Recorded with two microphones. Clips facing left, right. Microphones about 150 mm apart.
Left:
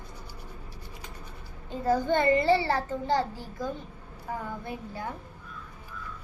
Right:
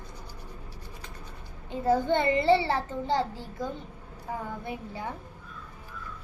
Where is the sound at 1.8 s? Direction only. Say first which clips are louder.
Even; 25° right (ahead or behind).